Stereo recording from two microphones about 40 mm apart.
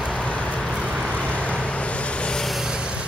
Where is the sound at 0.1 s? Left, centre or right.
Left.